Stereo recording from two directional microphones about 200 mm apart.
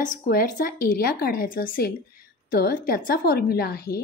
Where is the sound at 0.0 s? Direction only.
45° left (ahead or behind).